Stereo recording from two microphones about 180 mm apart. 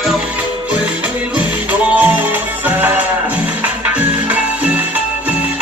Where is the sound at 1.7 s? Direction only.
10° right (ahead or behind).